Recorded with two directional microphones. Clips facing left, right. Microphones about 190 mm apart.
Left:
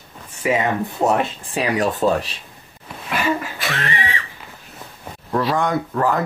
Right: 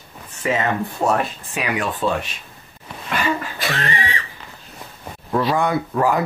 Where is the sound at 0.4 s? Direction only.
10° left (ahead or behind); by 2.4 s 35° left (ahead or behind).